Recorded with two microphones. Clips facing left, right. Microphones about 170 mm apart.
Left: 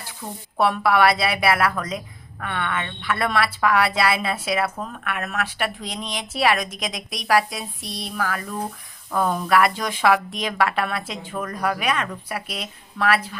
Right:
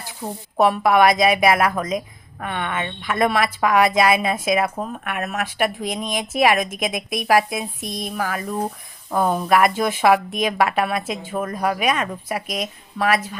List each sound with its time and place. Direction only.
0.6 s speech: 15° right (ahead or behind)